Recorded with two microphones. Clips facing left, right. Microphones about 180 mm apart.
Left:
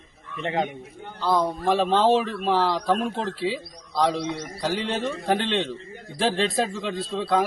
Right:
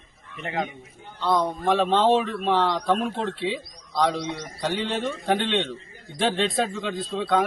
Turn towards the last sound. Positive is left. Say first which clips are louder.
# even
turn(degrees=0)  # may be behind; listen again after turning